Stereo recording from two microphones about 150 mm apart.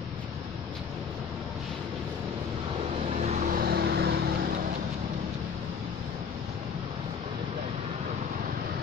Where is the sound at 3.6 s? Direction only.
90° right.